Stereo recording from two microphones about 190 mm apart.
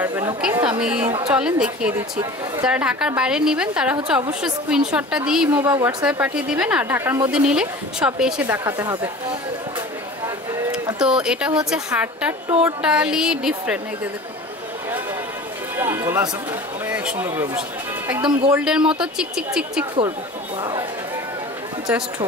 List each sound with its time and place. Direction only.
0.0 s chatter: 10° right (ahead or behind)
0.4 s a woman's voice: 5° right (ahead or behind)
1.0 s a woman's voice: 30° right (ahead or behind)
1.3 s speech: 5° right (ahead or behind)
11.0 s speech: 5° right (ahead or behind)
15.8 s speech: 10° right (ahead or behind)